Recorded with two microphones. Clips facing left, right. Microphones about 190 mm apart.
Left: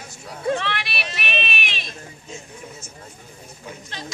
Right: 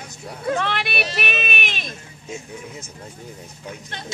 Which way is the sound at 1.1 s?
50° right (ahead or behind).